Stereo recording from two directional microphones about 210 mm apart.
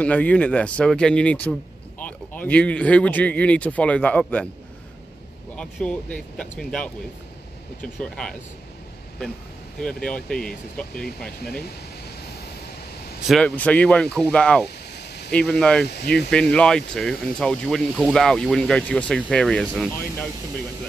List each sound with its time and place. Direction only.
0.0 s speech: 5° left (ahead or behind)
5.6 s speech: 5° left (ahead or behind)
9.8 s speech: 5° left (ahead or behind)
13.3 s speech: 5° left (ahead or behind)
15.0 s a sound: 50° left (ahead or behind)
15.3 s speech: 5° left (ahead or behind)
15.9 s speech: 50° left (ahead or behind)
16.2 s speech: 5° left (ahead or behind)